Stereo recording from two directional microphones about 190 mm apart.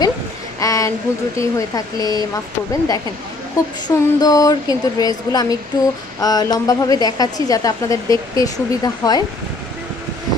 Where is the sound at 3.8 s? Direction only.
20° left (ahead or behind).